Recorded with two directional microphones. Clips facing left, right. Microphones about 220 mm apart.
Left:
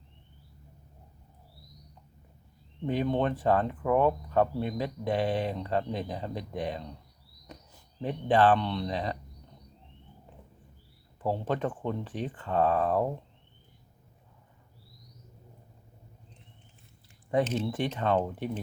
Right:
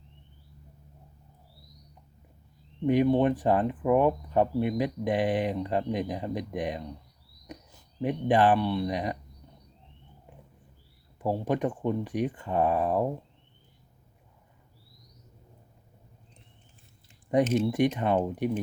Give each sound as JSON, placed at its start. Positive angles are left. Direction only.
{"t": 2.8, "sound": "speech", "side_deg": -15}
{"t": 8.0, "sound": "speech", "side_deg": -15}
{"t": 11.2, "sound": "speech", "side_deg": -15}
{"t": 17.3, "sound": "speech", "side_deg": -15}